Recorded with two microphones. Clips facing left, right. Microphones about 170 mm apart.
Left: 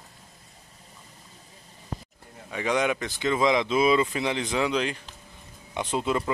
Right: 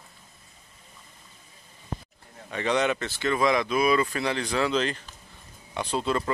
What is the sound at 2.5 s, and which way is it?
Speech, 10° left (ahead or behind).